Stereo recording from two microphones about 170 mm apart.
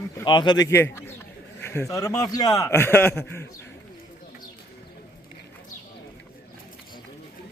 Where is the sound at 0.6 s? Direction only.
15° left (ahead or behind).